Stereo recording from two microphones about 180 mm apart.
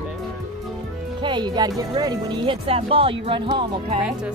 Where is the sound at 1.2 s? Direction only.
25° right (ahead or behind).